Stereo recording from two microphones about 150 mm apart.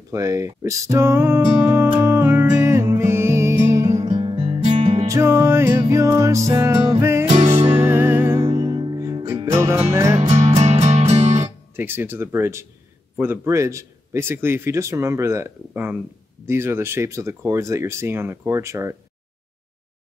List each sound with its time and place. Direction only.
0.1 s music: 20° right (ahead or behind); by 5.0 s 40° right (ahead or behind)
5.0 s music: 20° right (ahead or behind)
6.9 s music: 15° right (ahead or behind)
10.2 s music: 45° right (ahead or behind)
11.4 s speech: 15° right (ahead or behind)